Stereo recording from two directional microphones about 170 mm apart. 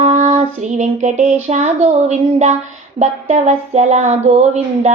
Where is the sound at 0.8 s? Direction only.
40° right (ahead or behind).